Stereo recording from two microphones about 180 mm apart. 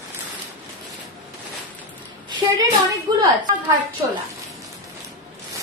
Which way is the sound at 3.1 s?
20° right (ahead or behind).